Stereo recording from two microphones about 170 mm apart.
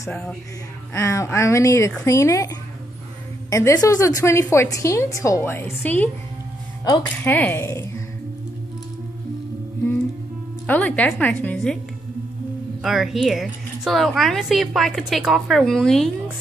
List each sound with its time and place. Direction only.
0.1 s a woman's voice: 5° left (ahead or behind)
0.9 s a woman's voice: 15° left (ahead or behind)
10.7 s a woman's voice: 10° left (ahead or behind)
12.8 s a woman's voice: centre (ahead or behind)